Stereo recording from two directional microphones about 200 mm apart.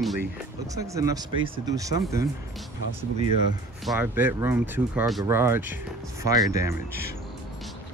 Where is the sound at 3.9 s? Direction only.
10° right (ahead or behind).